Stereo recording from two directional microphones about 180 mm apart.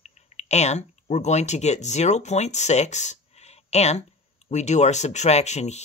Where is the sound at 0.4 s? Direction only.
40° left (ahead or behind).